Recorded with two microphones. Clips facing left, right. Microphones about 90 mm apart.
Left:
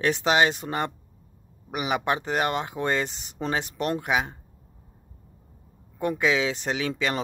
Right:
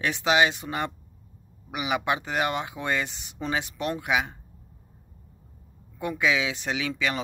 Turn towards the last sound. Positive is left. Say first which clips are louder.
# left 1 dB
turn(degrees=40)  # may be behind; listen again after turning